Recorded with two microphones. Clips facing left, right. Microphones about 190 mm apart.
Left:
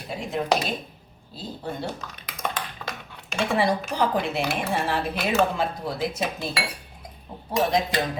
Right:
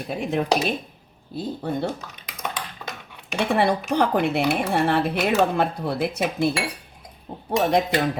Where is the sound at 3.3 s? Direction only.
60° right (ahead or behind).